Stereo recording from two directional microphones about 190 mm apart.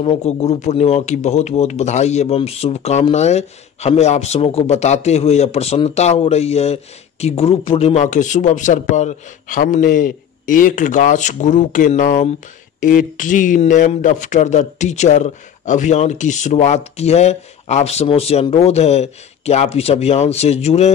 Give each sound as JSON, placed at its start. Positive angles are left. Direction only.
{"t": 0.0, "sound": "speech", "side_deg": 30}